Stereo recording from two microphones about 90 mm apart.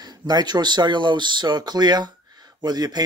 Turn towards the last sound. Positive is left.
turn(degrees=-50)  # may be behind; listen again after turning